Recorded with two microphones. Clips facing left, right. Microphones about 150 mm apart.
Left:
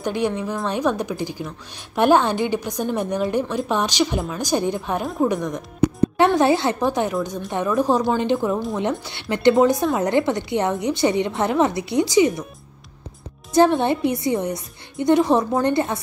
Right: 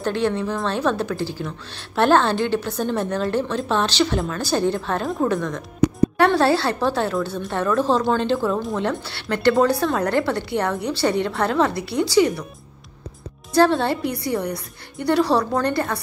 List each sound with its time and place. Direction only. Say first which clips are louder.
0.0 s a woman's voice: right 1 dB; 10° left (ahead or behind)
13.5 s a woman's voice: left 1 dB; 20° left (ahead or behind)